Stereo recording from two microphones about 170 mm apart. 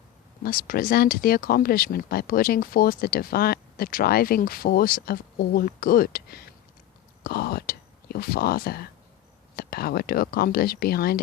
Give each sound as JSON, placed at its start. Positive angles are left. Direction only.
{"t": 0.4, "sound": "speech", "side_deg": 60}